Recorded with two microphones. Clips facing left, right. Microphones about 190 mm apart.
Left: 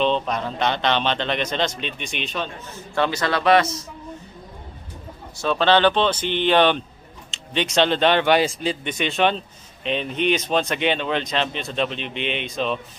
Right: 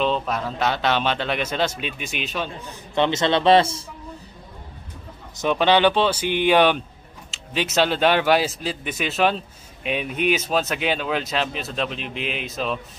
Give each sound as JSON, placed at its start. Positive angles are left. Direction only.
{"t": 0.0, "sound": "a man's voice", "side_deg": -5}
{"t": 2.9, "sound": "speech", "side_deg": -20}
{"t": 5.4, "sound": "a man's voice", "side_deg": -15}